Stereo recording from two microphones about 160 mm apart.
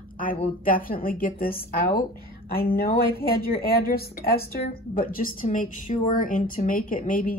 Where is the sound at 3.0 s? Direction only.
75° left (ahead or behind).